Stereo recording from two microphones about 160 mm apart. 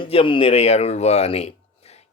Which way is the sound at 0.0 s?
35° left (ahead or behind).